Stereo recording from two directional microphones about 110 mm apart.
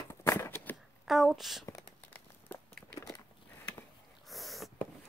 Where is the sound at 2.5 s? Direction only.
15° left (ahead or behind).